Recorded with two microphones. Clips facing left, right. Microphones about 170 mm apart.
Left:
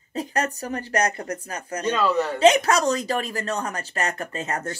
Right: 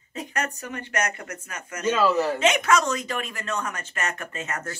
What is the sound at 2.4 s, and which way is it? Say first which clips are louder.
Speech: left 4 dB; 35° left (ahead or behind).